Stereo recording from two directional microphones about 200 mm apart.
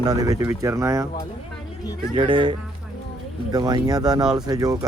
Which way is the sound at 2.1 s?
20° right (ahead or behind).